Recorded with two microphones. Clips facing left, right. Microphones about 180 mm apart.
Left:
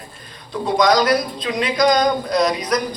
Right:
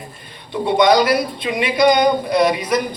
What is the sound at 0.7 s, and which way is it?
Speech, 25° right (ahead or behind).